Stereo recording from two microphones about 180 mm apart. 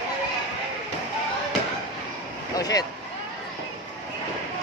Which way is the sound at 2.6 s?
20° left (ahead or behind).